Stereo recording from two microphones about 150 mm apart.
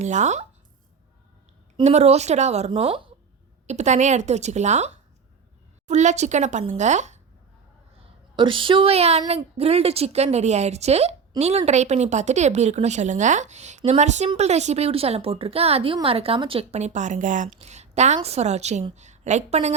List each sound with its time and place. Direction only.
0.0 s speech: 50° right (ahead or behind)
1.8 s speech: 45° right (ahead or behind)
3.7 s speech: 50° right (ahead or behind)
5.9 s speech: 50° right (ahead or behind)
8.4 s a woman's voice: 35° right (ahead or behind)